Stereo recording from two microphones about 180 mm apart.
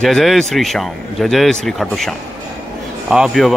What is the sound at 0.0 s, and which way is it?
Speech, centre (ahead or behind).